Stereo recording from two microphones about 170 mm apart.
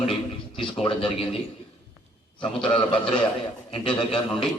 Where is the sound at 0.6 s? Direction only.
30° left (ahead or behind).